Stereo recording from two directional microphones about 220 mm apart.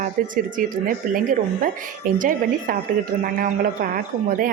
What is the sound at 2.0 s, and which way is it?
A woman's voice, 40° right (ahead or behind).